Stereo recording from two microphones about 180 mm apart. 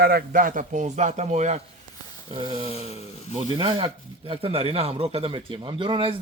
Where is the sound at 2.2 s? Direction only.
30° right (ahead or behind).